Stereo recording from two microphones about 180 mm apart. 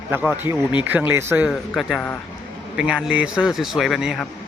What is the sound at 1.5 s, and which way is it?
Speech, centre (ahead or behind).